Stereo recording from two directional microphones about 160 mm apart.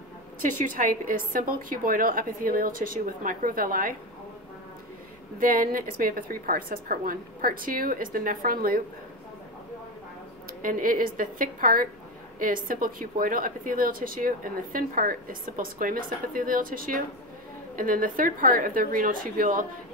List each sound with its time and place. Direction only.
0.4 s a woman's voice: 60° right (ahead or behind)
5.4 s a woman's voice: 65° right (ahead or behind)
10.6 s a woman's voice: 60° right (ahead or behind)